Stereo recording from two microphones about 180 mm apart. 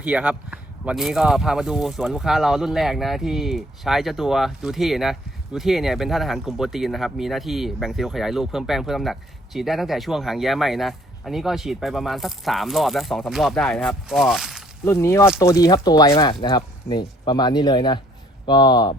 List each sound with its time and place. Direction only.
0.0 s speech: 5° right (ahead or behind)
14.8 s speech: 15° left (ahead or behind)